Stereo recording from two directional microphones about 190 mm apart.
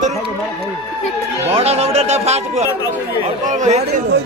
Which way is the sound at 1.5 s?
35° right (ahead or behind).